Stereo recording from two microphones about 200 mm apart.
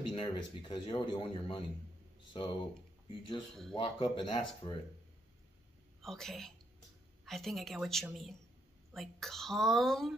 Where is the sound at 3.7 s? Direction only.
25° left (ahead or behind).